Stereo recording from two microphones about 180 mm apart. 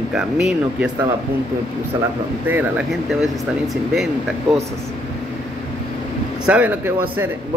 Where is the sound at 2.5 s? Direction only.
5° right (ahead or behind).